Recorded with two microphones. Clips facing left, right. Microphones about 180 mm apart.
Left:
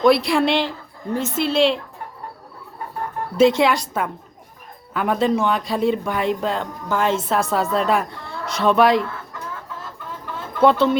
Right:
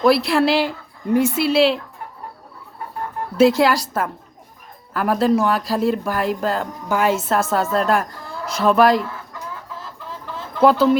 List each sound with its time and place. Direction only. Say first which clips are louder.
0.0 s a woman's voice: even; centre (ahead or behind)
3.3 s speech: right 1 dB; 5° right (ahead or behind)
10.6 s speech: right 1 dB; centre (ahead or behind)